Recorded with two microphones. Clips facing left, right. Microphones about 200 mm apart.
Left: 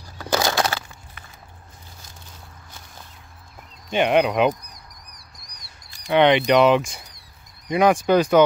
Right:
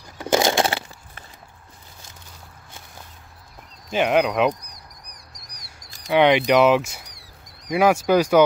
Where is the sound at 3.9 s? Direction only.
Centre (ahead or behind).